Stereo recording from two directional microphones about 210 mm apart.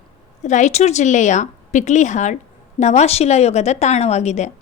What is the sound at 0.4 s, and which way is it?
A woman's voice, 35° left (ahead or behind).